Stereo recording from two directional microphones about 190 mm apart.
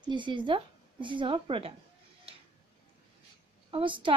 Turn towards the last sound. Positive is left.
turn(degrees=-25)  # may be behind; listen again after turning